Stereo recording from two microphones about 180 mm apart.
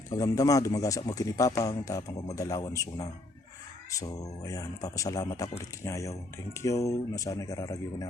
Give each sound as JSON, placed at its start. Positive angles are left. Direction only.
{"t": 0.1, "sound": "speech", "side_deg": 20}